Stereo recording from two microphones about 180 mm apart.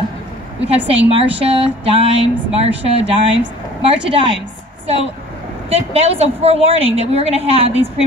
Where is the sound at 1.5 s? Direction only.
30° right (ahead or behind).